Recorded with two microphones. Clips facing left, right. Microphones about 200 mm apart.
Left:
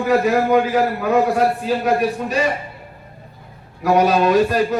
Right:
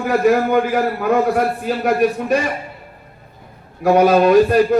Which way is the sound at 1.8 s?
50° right (ahead or behind).